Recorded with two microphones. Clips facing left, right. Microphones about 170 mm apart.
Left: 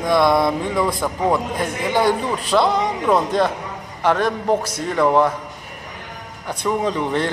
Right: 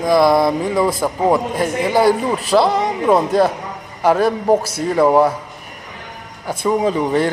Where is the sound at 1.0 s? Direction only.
20° right (ahead or behind).